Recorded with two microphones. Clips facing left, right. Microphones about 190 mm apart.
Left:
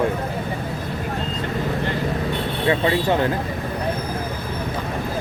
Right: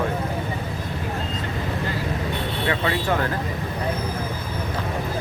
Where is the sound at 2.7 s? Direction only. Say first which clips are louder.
Left 5 dB; 25° left (ahead or behind).